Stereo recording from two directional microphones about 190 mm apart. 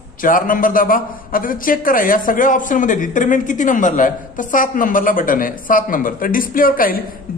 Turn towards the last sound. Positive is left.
turn(degrees=50)  # may be behind; listen again after turning